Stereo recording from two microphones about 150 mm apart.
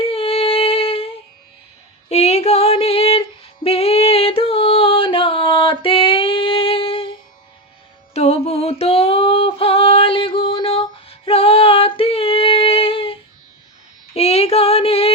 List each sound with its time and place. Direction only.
0.0 s humming: 40° left (ahead or behind)
2.0 s female singing: 45° left (ahead or behind)
8.1 s a sound: 45° left (ahead or behind)
14.1 s female singing: 45° left (ahead or behind)